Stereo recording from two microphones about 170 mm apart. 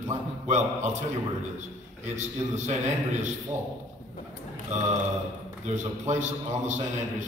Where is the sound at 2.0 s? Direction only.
45° right (ahead or behind).